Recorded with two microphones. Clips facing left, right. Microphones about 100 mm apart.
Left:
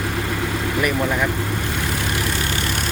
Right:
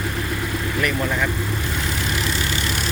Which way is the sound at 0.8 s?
10° left (ahead or behind).